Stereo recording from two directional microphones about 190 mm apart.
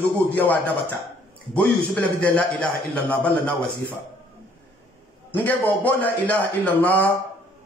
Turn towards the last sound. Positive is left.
turn(degrees=10)  # may be behind; listen again after turning